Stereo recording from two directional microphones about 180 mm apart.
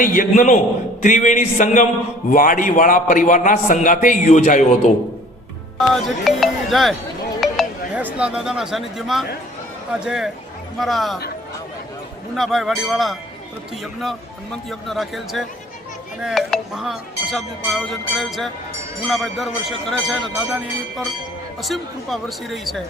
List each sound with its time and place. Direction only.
0.0 s a man's voice: 50° left (ahead or behind)
5.9 s speech: centre (ahead or behind)
7.4 s chink: centre (ahead or behind)
8.0 s speech: 5° right (ahead or behind)
12.4 s speech: centre (ahead or behind)
21.6 s speech: centre (ahead or behind)